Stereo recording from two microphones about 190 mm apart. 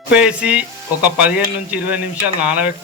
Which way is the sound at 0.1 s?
5° right (ahead or behind).